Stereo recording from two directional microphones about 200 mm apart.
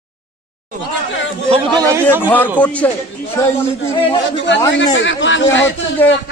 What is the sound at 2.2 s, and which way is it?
Speech, 10° left (ahead or behind).